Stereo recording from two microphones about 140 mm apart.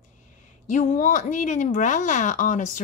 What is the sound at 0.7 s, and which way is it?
Speech, 60° left (ahead or behind).